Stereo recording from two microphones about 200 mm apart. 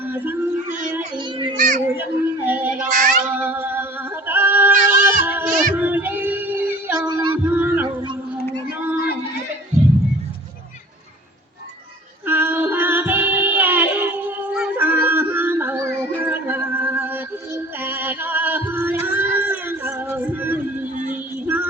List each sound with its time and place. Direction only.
0.0 s a sound: 10° right (ahead or behind)
1.1 s children playing: 25° right (ahead or behind)
1.5 s children playing: 40° right (ahead or behind)
2.0 s a sound: 10° right (ahead or behind)
2.9 s child singing: 40° right (ahead or behind)
3.4 s singing: 10° right (ahead or behind)
5.7 s music: 10° right (ahead or behind)
7.1 s music: 20° right (ahead or behind)
7.4 s music: 10° right (ahead or behind)
12.2 s female singing: 10° right (ahead or behind)
20.9 s a sound: 40° right (ahead or behind)
21.4 s music: 10° right (ahead or behind)